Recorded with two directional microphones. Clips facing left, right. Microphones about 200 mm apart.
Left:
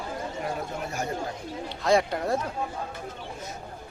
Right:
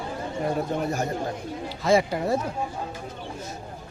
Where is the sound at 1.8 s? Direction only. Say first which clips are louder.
Right 2 dB; 5° right (ahead or behind).